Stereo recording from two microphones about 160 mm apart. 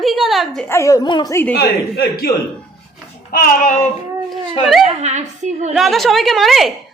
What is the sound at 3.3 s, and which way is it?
Child singing, 65° left (ahead or behind).